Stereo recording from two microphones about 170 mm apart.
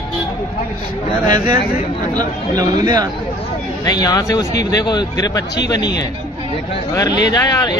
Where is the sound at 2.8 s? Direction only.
25° right (ahead or behind).